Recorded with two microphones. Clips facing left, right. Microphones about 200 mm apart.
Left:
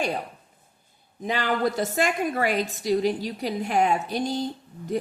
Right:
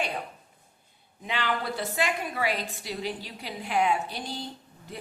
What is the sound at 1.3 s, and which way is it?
A woman's voice, 40° left (ahead or behind).